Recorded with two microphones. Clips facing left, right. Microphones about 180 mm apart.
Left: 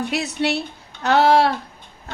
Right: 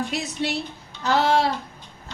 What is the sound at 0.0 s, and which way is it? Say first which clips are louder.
A woman's voice: left 4 dB; 65° left (ahead or behind).